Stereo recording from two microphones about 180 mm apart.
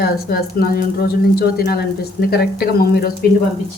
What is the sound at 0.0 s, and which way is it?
Speech, 60° left (ahead or behind).